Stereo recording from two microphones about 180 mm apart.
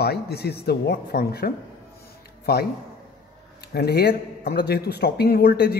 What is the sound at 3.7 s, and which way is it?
Speech, 65° left (ahead or behind).